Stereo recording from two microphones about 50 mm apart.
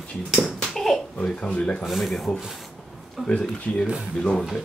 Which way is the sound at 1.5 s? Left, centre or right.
Centre.